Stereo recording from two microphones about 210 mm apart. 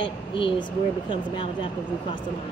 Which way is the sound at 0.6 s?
20° left (ahead or behind).